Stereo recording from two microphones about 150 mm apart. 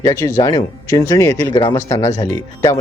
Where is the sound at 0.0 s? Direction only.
20° left (ahead or behind).